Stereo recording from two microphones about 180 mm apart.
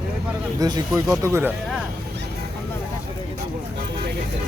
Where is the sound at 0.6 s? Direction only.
20° right (ahead or behind).